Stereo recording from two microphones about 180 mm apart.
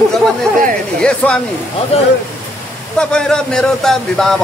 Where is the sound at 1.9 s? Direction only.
35° left (ahead or behind).